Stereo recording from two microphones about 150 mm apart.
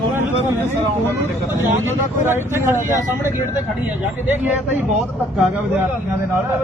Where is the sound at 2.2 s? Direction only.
15° right (ahead or behind).